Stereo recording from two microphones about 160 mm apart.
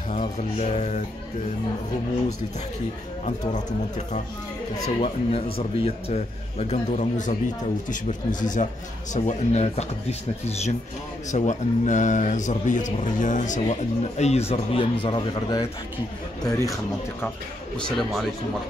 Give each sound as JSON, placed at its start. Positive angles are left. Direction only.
{"t": 0.4, "sound": "speech", "side_deg": 45}
{"t": 3.3, "sound": "speech", "side_deg": 50}
{"t": 4.8, "sound": "a man's voice", "side_deg": 35}
{"t": 17.7, "sound": "speech", "side_deg": 5}